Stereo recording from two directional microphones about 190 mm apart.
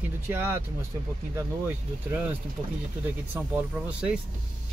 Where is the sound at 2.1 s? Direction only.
10° right (ahead or behind).